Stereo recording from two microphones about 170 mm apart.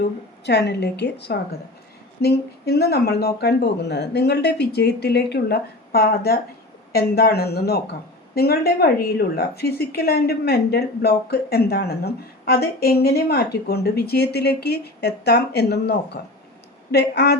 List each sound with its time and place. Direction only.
0.0 s a woman's voice: 80° left